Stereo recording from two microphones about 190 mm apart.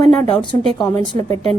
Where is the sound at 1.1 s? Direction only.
35° right (ahead or behind).